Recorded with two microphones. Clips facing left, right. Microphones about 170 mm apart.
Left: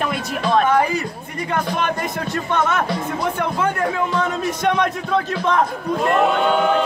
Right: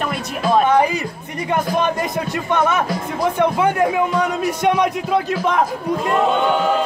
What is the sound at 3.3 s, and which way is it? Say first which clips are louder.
A man's voice: right 5 dB; 15° right (ahead or behind).